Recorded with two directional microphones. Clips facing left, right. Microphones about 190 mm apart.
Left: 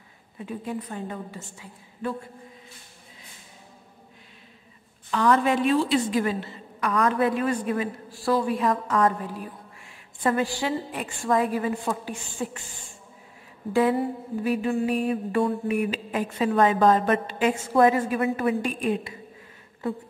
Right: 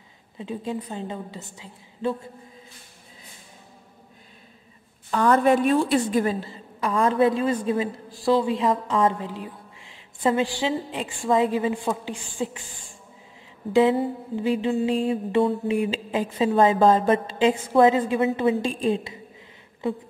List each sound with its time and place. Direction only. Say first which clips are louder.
0.4 s a woman's voice: right 2 dB; 25° right (ahead or behind)
5.1 s a woman's voice: right 3 dB; 45° right (ahead or behind); by 12.6 s 15° right (ahead or behind)
13.7 s a woman's voice: right 3 dB; 25° right (ahead or behind)